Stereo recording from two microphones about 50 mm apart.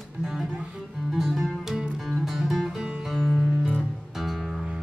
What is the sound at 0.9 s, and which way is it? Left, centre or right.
Music, centre.